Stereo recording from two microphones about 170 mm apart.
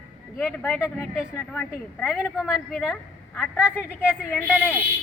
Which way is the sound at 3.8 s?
10° right (ahead or behind).